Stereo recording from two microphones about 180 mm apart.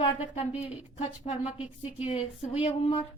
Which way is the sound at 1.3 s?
35° left (ahead or behind).